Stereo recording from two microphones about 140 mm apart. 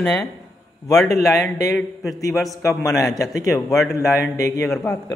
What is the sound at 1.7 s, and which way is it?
Speech, centre (ahead or behind).